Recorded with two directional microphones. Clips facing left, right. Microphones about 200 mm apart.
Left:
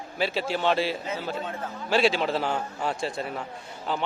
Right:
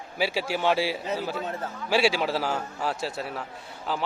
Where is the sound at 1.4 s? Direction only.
40° right (ahead or behind).